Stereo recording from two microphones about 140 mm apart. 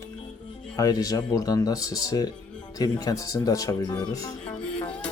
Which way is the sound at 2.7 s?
25° left (ahead or behind).